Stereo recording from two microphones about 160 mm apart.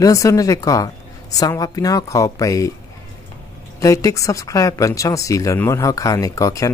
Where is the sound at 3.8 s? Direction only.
20° left (ahead or behind).